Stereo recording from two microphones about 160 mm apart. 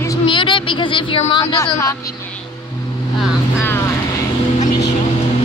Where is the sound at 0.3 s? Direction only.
30° left (ahead or behind).